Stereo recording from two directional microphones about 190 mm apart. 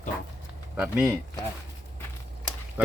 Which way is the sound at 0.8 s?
10° right (ahead or behind).